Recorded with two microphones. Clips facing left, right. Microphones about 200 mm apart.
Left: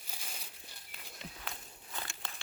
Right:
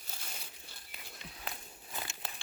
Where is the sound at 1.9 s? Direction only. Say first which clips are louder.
Right 1 dB; 15° right (ahead or behind).